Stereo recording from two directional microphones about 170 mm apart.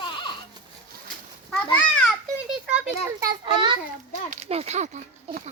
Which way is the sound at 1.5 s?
5° left (ahead or behind).